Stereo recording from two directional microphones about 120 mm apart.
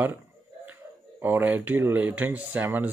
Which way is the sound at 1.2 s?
15° right (ahead or behind).